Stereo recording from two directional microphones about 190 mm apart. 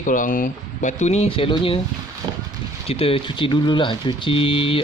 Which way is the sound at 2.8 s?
30° left (ahead or behind).